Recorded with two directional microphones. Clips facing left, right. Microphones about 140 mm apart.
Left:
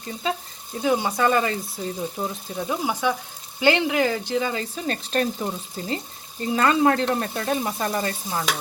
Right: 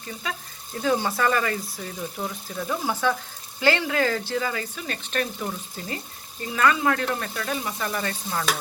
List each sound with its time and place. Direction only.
0.2 s speech: 20° left (ahead or behind)